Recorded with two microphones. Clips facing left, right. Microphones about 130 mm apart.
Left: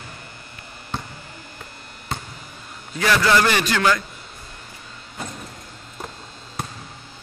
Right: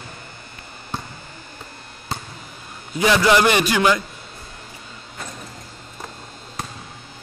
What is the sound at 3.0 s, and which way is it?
A man's voice, 15° right (ahead or behind).